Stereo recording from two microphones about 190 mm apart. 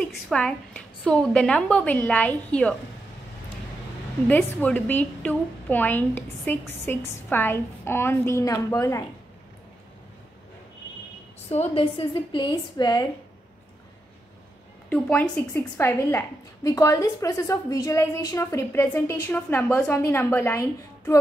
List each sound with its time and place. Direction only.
0.0 s a woman's voice: 5° left (ahead or behind)
4.3 s a woman's voice: 10° left (ahead or behind)
11.4 s a woman's voice: 35° left (ahead or behind)
14.9 s a woman's voice: 5° left (ahead or behind)